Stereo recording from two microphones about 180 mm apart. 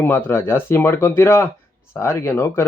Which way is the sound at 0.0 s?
15° left (ahead or behind).